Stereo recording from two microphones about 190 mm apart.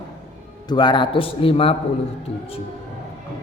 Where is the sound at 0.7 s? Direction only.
25° left (ahead or behind).